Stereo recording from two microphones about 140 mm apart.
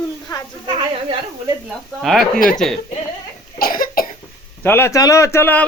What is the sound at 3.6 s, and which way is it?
Cough, 90° left.